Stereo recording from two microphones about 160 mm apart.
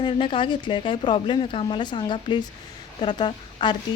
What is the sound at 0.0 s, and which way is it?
Speech, 30° left (ahead or behind).